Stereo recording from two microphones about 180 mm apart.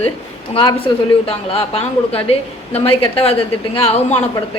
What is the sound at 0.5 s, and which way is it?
A woman's voice, 25° left (ahead or behind).